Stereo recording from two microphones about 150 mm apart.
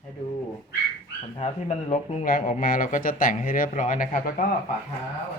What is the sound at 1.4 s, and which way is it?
Speech, 50° left (ahead or behind).